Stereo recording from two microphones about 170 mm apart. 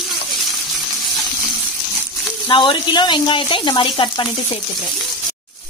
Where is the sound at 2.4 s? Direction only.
30° left (ahead or behind).